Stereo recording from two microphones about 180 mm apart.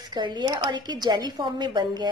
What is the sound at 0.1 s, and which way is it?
A woman's voice, 25° right (ahead or behind).